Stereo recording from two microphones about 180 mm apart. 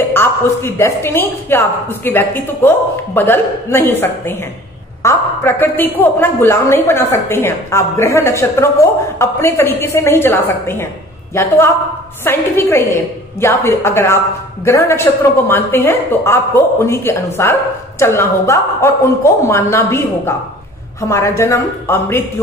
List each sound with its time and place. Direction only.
0.1 s a woman's voice: 10° left (ahead or behind)